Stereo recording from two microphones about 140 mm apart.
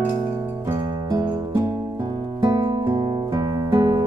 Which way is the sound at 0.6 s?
25° right (ahead or behind).